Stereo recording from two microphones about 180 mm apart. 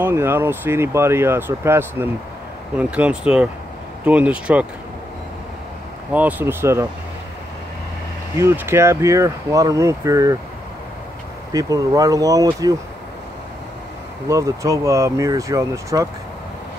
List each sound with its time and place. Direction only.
0.0 s speech: 15° right (ahead or behind)
6.1 s speech: 10° right (ahead or behind)
8.4 s speech: 15° right (ahead or behind)
11.5 s speech: 20° right (ahead or behind)
14.2 s speech: 20° right (ahead or behind)